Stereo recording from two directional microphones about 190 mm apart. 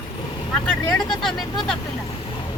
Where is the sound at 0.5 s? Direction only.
5° left (ahead or behind).